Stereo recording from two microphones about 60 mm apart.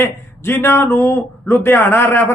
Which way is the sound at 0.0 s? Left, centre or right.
Left.